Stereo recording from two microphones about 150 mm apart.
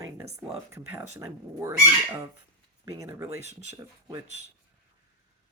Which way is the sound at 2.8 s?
20° right (ahead or behind).